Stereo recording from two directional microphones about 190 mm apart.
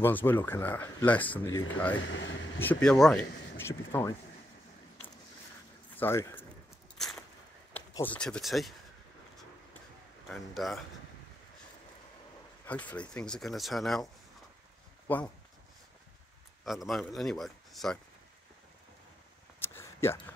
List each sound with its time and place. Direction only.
0.0 s speech: 10° left (ahead or behind)
2.0 s speech: 90° left
2.6 s speech: 5° left (ahead or behind)
5.9 s speech: 10° left (ahead or behind)
7.0 s a sound: centre (ahead or behind)
7.9 s speech: 10° left (ahead or behind)
10.2 s speech: centre (ahead or behind)
12.6 s speech: 5° left (ahead or behind)
15.0 s speech: 10° left (ahead or behind)
16.6 s speech: centre (ahead or behind)
19.6 s a sound: 15° left (ahead or behind)